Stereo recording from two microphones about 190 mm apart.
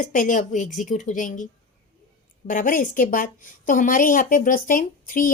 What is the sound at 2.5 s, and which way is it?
Speech, 45° left (ahead or behind).